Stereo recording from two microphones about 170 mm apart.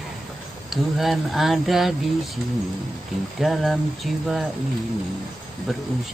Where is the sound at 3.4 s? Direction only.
Centre (ahead or behind).